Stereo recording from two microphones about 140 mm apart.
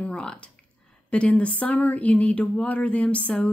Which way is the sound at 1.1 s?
10° left (ahead or behind).